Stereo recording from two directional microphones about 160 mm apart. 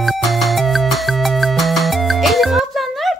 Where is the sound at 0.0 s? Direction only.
Centre (ahead or behind).